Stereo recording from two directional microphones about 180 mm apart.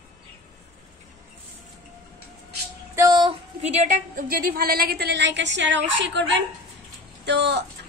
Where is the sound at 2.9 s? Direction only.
20° right (ahead or behind).